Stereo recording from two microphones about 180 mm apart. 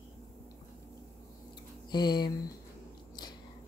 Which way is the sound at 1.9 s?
25° left (ahead or behind).